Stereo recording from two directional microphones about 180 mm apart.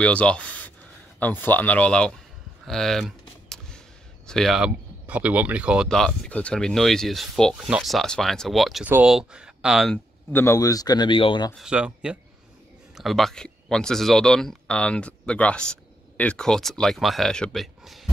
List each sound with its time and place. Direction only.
0.0 s speech: 5° left (ahead or behind)
2.6 s typing: centre (ahead or behind)
4.3 s speech: centre (ahead or behind)
10.3 s speech: 15° left (ahead or behind)
11.5 s speech: 5° right (ahead or behind)